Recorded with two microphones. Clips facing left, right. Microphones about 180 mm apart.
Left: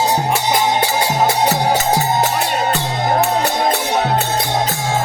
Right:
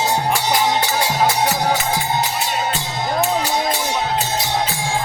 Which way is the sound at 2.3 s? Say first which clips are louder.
Left 4 dB; 60° left (ahead or behind).